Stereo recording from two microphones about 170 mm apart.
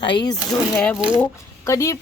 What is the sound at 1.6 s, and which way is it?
Speech, 15° left (ahead or behind).